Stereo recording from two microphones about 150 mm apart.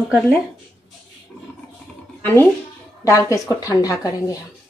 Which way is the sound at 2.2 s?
15° left (ahead or behind).